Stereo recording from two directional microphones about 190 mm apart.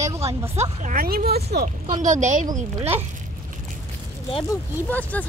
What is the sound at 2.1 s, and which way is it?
Speech, 40° right (ahead or behind).